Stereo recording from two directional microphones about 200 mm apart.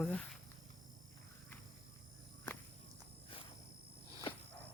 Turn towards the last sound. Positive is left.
turn(degrees=25)  # may be behind; listen again after turning